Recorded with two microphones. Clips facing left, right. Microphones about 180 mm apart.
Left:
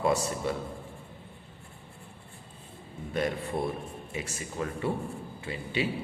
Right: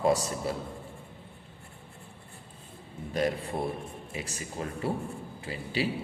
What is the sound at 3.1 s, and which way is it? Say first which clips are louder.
A man's voice: right 1 dB; 35° right (ahead or behind).